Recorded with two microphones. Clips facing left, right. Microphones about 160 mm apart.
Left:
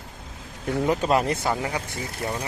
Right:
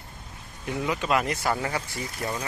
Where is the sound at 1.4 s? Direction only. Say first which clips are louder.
Left 1 dB; 20° left (ahead or behind).